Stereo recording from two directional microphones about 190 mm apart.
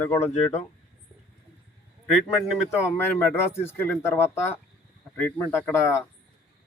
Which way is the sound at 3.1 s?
15° left (ahead or behind).